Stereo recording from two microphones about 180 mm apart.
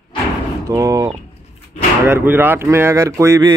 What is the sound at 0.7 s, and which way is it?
Speech, 20° right (ahead or behind).